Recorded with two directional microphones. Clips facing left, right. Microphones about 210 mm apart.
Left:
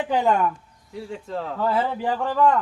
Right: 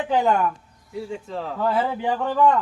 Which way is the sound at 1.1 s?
Centre (ahead or behind).